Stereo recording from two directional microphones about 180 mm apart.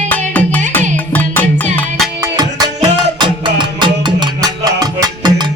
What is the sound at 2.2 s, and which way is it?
Music, 20° right (ahead or behind).